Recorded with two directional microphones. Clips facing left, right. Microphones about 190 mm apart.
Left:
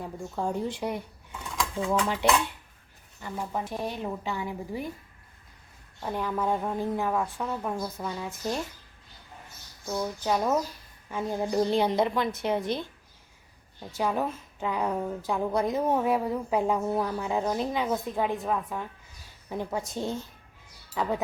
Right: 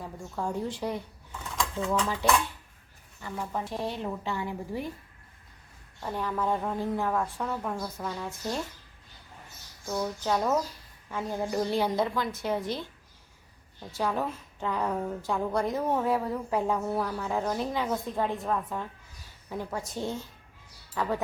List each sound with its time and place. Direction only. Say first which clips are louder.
0.0 s a woman's voice: left 3 dB; 20° left (ahead or behind)
6.0 s a woman's voice: left 1 dB; 10° left (ahead or behind)
9.8 s speech: even; centre (ahead or behind)
10.2 s a woman's voice: left 1 dB; 10° left (ahead or behind)
19.5 s a woman's voice: left 3 dB; 20° left (ahead or behind)